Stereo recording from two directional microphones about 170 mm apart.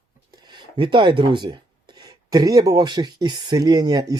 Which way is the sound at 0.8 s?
25° right (ahead or behind).